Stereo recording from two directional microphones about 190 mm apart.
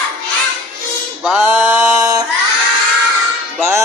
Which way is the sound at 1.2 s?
5° right (ahead or behind).